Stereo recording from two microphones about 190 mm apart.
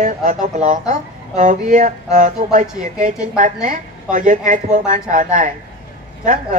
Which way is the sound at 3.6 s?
45° right (ahead or behind).